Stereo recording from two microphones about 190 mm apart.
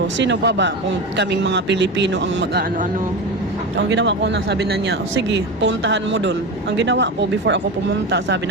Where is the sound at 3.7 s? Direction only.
70° right (ahead or behind).